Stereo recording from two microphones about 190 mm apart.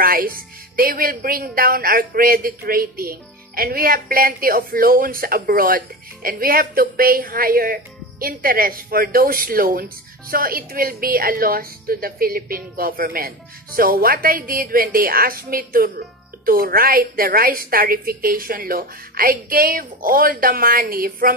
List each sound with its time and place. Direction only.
0.0 s speech: 50° right (ahead or behind)